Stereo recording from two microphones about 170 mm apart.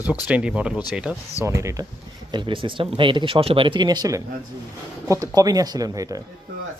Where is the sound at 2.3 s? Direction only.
30° right (ahead or behind).